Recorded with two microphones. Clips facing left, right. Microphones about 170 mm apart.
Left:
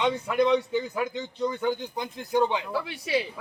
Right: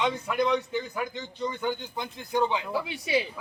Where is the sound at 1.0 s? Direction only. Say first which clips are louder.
Left 4 dB; 10° left (ahead or behind).